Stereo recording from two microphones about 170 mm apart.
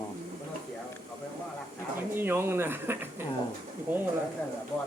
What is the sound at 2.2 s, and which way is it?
Speech, 15° right (ahead or behind).